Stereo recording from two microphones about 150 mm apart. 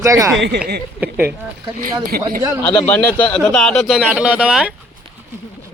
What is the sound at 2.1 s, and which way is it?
Speech, 90° right.